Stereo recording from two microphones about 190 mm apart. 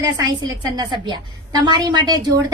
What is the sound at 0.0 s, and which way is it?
A woman's voice, 20° right (ahead or behind).